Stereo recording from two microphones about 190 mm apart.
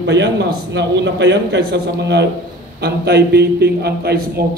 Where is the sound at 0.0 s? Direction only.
65° right (ahead or behind).